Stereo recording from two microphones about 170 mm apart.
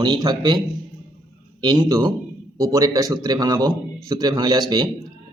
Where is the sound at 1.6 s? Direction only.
25° right (ahead or behind).